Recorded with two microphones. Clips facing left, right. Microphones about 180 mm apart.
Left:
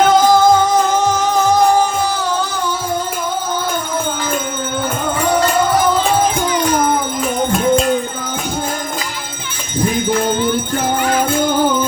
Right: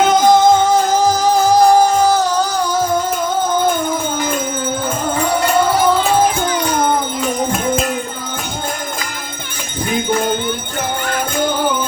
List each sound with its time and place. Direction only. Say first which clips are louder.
0.1 s music: even; 20° right (ahead or behind)
0.9 s music: right 2 dB; 35° right (ahead or behind)